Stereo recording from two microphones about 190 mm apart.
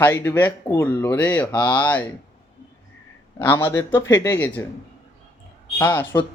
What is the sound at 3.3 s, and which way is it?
Speech, 10° left (ahead or behind).